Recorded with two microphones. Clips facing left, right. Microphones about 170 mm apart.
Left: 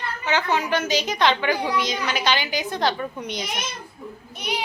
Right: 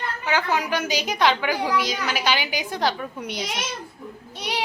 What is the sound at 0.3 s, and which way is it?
A woman's voice, 10° right (ahead or behind).